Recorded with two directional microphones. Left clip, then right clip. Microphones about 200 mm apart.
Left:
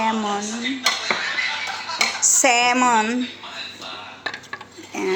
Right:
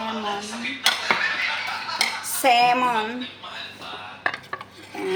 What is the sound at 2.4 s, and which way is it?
Speech, 40° left (ahead or behind).